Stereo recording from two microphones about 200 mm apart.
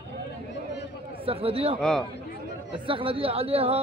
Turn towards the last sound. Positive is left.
turn(degrees=-30)  # may be behind; listen again after turning